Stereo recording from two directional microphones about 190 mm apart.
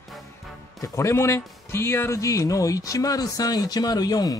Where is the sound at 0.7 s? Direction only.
15° left (ahead or behind).